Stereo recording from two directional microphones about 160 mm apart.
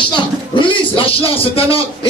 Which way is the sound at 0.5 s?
30° left (ahead or behind).